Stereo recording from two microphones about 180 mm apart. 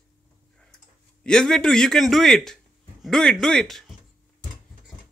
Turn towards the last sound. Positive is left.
turn(degrees=0)  # may be behind; listen again after turning